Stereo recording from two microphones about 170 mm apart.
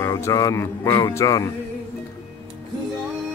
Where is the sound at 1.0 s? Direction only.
20° left (ahead or behind).